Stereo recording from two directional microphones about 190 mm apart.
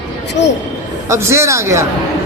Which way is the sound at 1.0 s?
15° right (ahead or behind).